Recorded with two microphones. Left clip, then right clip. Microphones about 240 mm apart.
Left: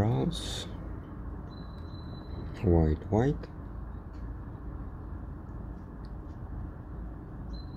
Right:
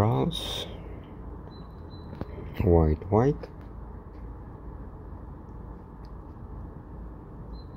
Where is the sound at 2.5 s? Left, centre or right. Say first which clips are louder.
Right 5 dB; centre.